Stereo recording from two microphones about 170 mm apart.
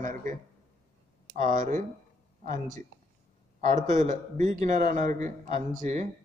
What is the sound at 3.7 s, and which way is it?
Speech, 45° right (ahead or behind).